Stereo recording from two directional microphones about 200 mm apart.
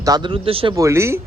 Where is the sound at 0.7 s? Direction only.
15° right (ahead or behind).